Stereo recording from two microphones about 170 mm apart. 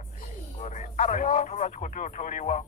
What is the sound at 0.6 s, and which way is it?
Speech, 45° left (ahead or behind).